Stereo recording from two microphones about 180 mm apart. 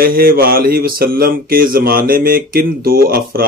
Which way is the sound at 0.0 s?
55° right (ahead or behind).